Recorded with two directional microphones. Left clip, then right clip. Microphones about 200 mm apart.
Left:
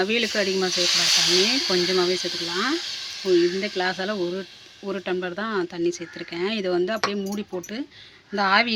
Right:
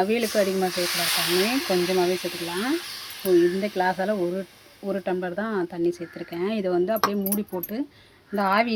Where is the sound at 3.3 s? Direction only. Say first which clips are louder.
Right 1 dB; centre (ahead or behind).